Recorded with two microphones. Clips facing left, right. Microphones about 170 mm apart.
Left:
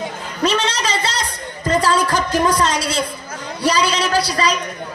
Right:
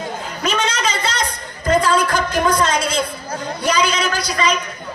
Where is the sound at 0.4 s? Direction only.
35° left (ahead or behind).